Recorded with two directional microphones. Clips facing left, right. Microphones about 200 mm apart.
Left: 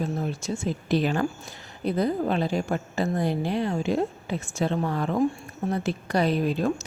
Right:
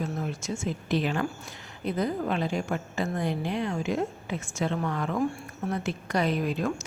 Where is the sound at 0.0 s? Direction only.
30° left (ahead or behind).